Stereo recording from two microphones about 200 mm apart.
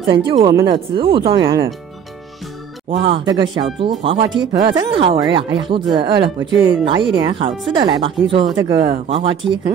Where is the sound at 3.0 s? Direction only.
25° right (ahead or behind).